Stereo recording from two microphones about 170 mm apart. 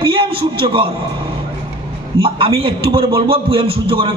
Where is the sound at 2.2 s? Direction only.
30° right (ahead or behind).